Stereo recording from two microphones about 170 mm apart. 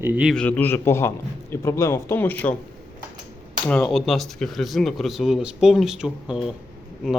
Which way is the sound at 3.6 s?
10° left (ahead or behind).